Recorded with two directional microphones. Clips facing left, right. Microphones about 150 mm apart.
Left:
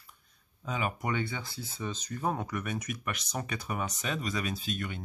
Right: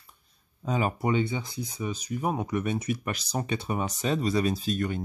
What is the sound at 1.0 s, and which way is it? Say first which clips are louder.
Speech: right 7 dB; 20° right (ahead or behind).